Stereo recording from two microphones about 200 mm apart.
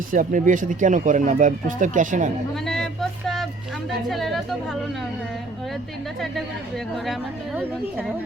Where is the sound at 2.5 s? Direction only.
Centre (ahead or behind).